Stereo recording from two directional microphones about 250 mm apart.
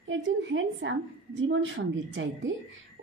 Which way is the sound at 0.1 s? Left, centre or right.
Right.